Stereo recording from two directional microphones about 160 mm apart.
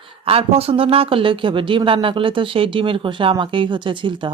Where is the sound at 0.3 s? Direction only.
40° right (ahead or behind).